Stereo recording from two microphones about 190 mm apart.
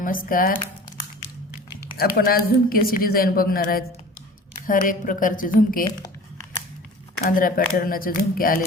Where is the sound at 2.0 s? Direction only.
50° left (ahead or behind).